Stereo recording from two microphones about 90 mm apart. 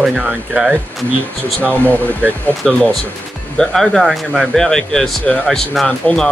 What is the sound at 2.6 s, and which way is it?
Speech, 5° left (ahead or behind).